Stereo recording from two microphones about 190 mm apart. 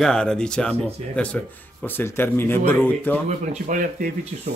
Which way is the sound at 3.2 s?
40° right (ahead or behind).